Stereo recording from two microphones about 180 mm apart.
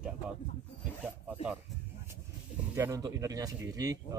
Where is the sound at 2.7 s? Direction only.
15° right (ahead or behind).